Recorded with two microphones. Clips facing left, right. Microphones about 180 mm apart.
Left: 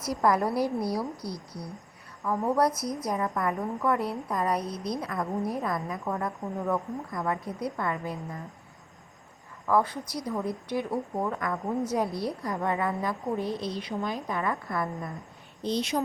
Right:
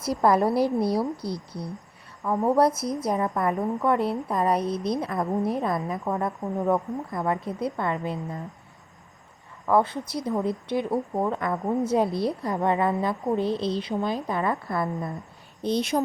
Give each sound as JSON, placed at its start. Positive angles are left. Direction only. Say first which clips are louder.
{"t": 0.0, "sound": "a woman's voice", "louder": "right 4 dB", "side_deg": -30}
{"t": 9.6, "sound": "a woman's voice", "louder": "right 3 dB", "side_deg": -25}
{"t": 15.6, "sound": "speech", "louder": "right 4 dB", "side_deg": -55}